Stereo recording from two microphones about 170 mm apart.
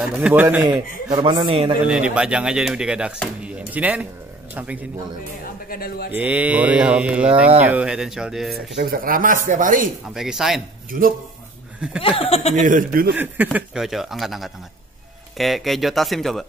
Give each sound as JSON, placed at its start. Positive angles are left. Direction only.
{"t": 0.0, "sound": "mantra", "side_deg": -5}
{"t": 0.7, "sound": "a man's voice", "side_deg": -25}
{"t": 1.9, "sound": "speech", "side_deg": -5}
{"t": 5.7, "sound": "speech", "side_deg": 65}
{"t": 6.1, "sound": "mantra", "side_deg": -10}
{"t": 7.6, "sound": "speech", "side_deg": -5}
{"t": 8.9, "sound": "speech", "side_deg": -55}
{"t": 10.0, "sound": "speech", "side_deg": -5}
{"t": 10.9, "sound": "speech", "side_deg": -55}
{"t": 12.0, "sound": "speech", "side_deg": 35}
{"t": 12.5, "sound": "speech", "side_deg": -50}
{"t": 13.1, "sound": "speech", "side_deg": -10}